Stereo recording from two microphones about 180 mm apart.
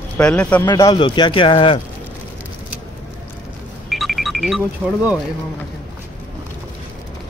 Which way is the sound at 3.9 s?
Centre (ahead or behind).